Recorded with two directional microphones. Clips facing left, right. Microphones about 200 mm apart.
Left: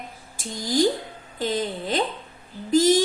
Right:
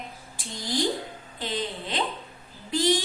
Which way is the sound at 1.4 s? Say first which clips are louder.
Left 6 dB; 45° left (ahead or behind).